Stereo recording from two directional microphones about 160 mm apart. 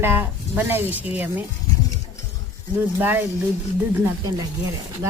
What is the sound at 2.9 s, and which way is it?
Speech, 15° right (ahead or behind).